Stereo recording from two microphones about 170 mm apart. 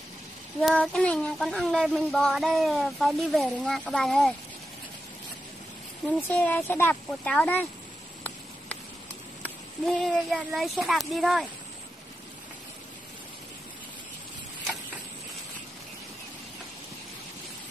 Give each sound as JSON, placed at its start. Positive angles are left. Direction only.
{"t": 0.6, "sound": "speech", "side_deg": 5}
{"t": 6.2, "sound": "speech", "side_deg": 10}
{"t": 9.4, "sound": "speech", "side_deg": 0}